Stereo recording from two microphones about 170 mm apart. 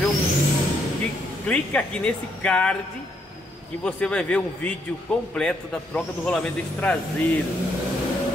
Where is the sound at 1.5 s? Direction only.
5° left (ahead or behind).